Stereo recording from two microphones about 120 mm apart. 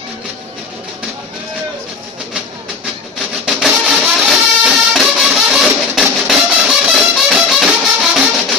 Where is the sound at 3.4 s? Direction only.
5° right (ahead or behind).